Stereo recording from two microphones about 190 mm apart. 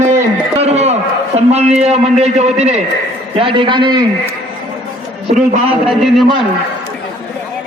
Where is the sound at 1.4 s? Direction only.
35° right (ahead or behind).